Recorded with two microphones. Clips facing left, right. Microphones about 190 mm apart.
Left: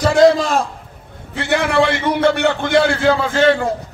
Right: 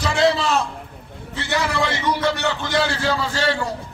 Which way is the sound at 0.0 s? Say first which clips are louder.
Left 7 dB; 45° left (ahead or behind).